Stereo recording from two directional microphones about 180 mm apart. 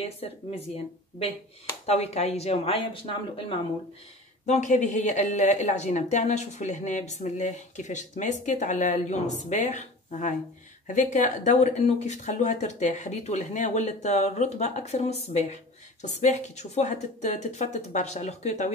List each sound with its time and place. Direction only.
0.0 s speech: 35° left (ahead or behind)
1.9 s speech: 35° left (ahead or behind)
4.5 s speech: 40° left (ahead or behind)